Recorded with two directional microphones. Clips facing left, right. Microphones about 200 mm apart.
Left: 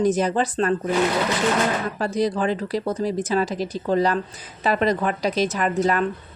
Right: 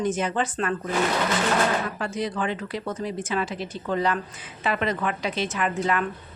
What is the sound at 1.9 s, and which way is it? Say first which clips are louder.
Speech: left 6 dB; 35° left (ahead or behind).